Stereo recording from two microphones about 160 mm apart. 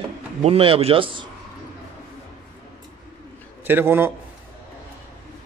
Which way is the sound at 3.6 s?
15° right (ahead or behind).